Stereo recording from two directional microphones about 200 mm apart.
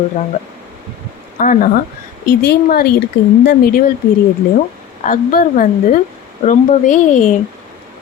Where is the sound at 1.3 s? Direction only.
40° left (ahead or behind).